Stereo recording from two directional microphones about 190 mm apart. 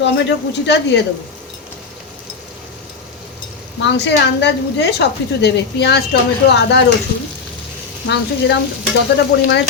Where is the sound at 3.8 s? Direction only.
65° left (ahead or behind).